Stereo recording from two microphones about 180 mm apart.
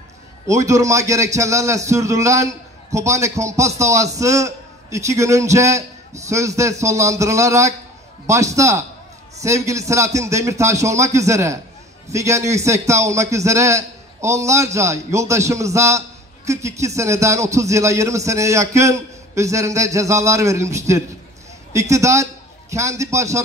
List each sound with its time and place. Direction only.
0.5 s a man's voice: 15° right (ahead or behind)